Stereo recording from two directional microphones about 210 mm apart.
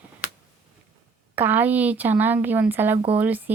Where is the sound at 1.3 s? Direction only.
10° right (ahead or behind).